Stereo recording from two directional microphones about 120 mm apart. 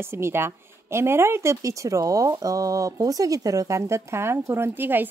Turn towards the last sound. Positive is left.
turn(degrees=-15)  # may be behind; listen again after turning